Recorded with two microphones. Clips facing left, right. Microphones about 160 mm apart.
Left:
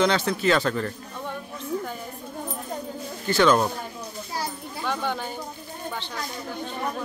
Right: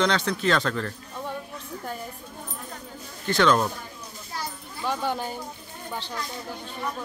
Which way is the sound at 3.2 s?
5° left (ahead or behind).